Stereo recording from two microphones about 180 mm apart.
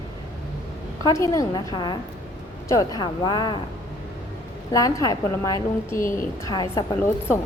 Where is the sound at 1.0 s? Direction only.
20° left (ahead or behind).